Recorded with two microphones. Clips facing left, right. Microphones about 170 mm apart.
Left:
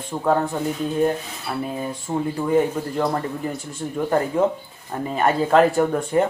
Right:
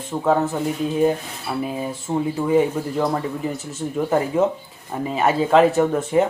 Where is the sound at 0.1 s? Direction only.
5° right (ahead or behind).